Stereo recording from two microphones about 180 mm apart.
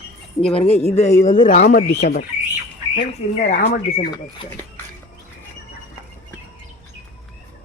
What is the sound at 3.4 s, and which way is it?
Speech, 40° left (ahead or behind).